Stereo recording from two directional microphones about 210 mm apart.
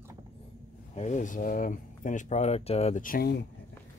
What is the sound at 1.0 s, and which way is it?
Speech, 35° left (ahead or behind).